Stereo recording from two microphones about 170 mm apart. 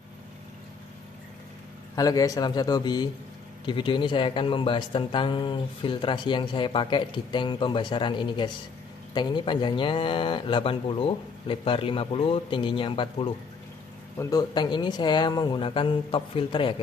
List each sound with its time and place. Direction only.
2.0 s speech: 20° left (ahead or behind)